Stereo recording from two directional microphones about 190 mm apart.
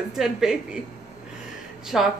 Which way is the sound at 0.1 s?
Centre (ahead or behind).